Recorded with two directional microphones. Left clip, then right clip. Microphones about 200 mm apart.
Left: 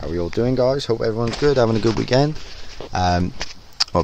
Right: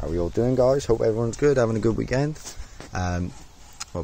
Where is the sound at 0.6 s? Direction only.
5° right (ahead or behind).